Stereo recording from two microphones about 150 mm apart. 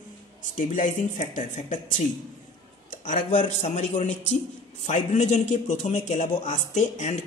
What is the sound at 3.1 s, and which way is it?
A man's voice, 55° left (ahead or behind).